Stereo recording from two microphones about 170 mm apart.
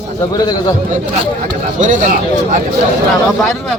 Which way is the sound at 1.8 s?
50° right (ahead or behind).